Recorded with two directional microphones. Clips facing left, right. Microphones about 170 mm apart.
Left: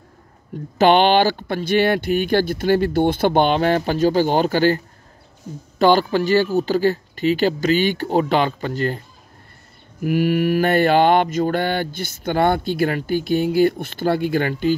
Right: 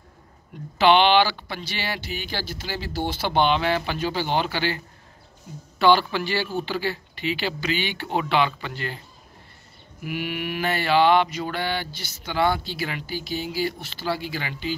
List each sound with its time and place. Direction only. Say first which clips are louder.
0.7 s mantra: left 3 dB; 45° left (ahead or behind)